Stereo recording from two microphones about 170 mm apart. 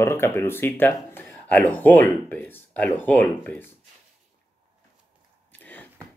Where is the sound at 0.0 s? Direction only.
15° left (ahead or behind).